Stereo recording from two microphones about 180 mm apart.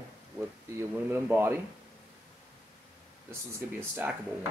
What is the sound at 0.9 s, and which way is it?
Speech, 10° right (ahead or behind).